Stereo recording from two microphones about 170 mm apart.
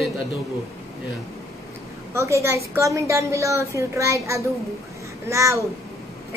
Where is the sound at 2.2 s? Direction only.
15° right (ahead or behind).